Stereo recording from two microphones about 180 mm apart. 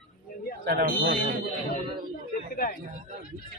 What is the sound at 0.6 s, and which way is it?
Speech, 60° right (ahead or behind).